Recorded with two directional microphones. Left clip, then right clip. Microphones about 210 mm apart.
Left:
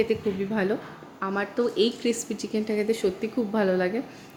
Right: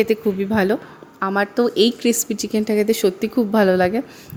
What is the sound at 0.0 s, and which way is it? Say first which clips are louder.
Speech: right 7 dB; 50° right (ahead or behind).